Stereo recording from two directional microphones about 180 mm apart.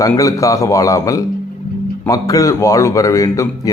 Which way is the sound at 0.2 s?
20° left (ahead or behind).